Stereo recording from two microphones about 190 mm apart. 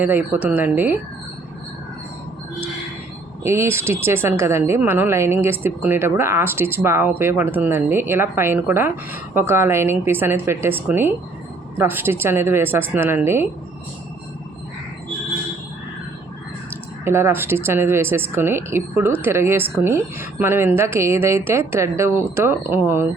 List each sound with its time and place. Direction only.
0.0 s a woman's voice: 10° right (ahead or behind)
3.4 s a woman's voice: 15° right (ahead or behind)
17.0 s a woman's voice: 15° right (ahead or behind)